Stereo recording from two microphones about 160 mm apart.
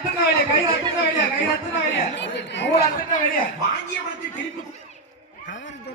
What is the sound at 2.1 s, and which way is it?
Speech, 90° left.